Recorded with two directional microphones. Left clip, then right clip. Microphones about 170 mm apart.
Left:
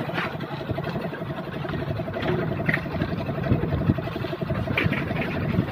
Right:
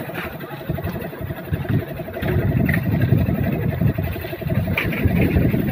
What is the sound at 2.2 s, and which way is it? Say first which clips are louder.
Vehicle: right 4 dB; 60° right (ahead or behind).